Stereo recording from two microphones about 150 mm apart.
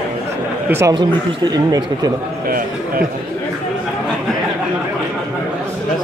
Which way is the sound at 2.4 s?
75° right (ahead or behind).